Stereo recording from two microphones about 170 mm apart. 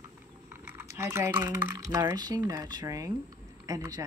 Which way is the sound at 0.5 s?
10° right (ahead or behind).